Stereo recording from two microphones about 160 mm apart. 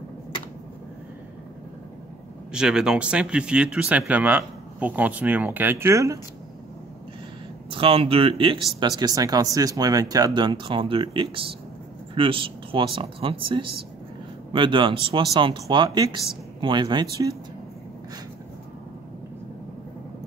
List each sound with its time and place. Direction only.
2.5 s speech: 5° right (ahead or behind)
7.7 s speech: 35° right (ahead or behind)